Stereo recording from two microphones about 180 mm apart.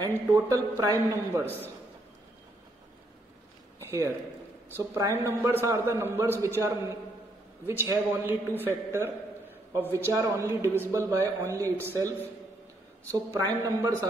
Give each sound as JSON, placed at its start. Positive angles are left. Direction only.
{"t": 0.3, "sound": "a man's voice", "side_deg": -20}
{"t": 3.8, "sound": "a man's voice", "side_deg": -20}
{"t": 13.1, "sound": "a man's voice", "side_deg": -20}